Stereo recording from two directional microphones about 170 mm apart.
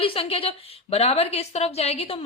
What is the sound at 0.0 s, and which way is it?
A woman's voice, 35° left (ahead or behind).